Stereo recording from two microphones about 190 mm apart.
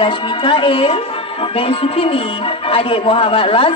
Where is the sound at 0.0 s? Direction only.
25° left (ahead or behind).